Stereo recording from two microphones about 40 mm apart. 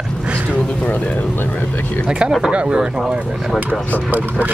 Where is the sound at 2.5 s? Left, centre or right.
Right.